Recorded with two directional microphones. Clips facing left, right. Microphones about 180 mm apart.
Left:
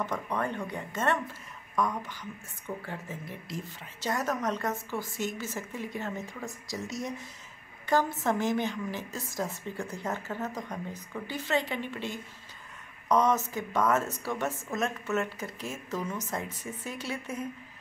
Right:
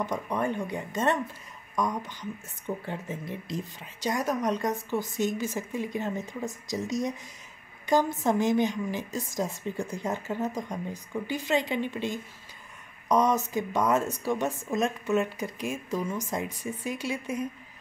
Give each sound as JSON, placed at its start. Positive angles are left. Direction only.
{"t": 0.0, "sound": "speech", "side_deg": -15}